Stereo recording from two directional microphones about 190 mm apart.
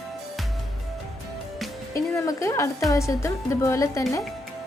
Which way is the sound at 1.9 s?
15° left (ahead or behind).